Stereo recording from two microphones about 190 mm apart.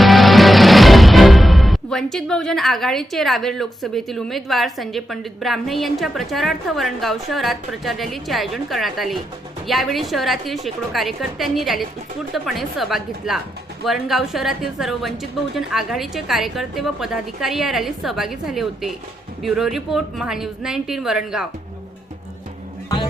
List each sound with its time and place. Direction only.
0.0 s music: centre (ahead or behind)
9.6 s a woman's voice: centre (ahead or behind)